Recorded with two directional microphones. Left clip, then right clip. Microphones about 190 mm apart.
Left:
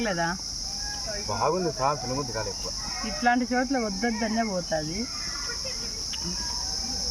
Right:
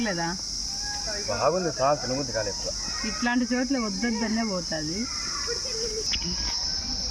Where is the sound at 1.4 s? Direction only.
50° left (ahead or behind).